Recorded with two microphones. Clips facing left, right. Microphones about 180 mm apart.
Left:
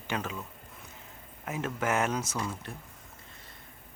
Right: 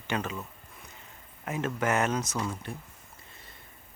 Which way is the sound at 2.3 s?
5° right (ahead or behind).